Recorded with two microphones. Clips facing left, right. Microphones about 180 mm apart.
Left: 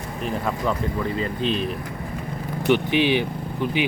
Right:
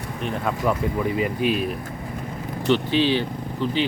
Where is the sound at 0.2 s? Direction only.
Centre (ahead or behind).